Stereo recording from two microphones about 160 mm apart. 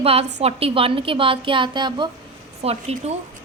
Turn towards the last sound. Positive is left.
turn(degrees=-40)  # may be behind; listen again after turning